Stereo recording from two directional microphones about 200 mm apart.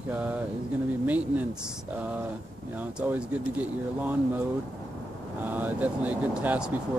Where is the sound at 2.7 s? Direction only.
10° right (ahead or behind).